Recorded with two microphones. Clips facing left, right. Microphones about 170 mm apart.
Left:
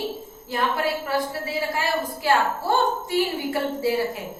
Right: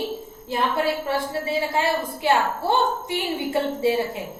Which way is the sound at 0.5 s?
25° right (ahead or behind).